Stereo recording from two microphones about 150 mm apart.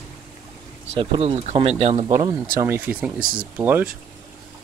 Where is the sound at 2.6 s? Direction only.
15° right (ahead or behind).